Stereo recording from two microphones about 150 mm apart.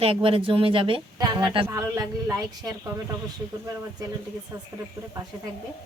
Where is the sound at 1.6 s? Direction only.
20° right (ahead or behind).